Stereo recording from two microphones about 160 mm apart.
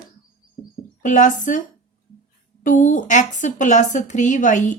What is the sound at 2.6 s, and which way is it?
A woman's voice, 55° left (ahead or behind).